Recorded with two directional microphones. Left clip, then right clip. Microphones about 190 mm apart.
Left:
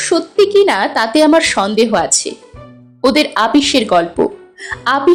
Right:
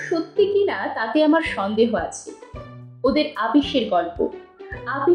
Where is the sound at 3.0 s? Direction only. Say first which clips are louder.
Left 8 dB; 40° left (ahead or behind).